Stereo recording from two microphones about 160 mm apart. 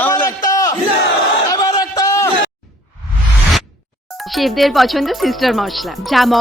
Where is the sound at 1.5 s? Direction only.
25° left (ahead or behind).